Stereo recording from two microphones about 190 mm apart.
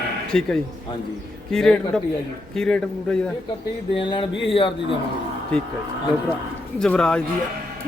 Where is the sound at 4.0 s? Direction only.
25° left (ahead or behind).